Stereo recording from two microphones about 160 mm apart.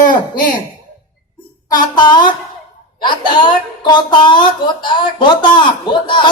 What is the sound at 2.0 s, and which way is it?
A woman's voice, 30° left (ahead or behind).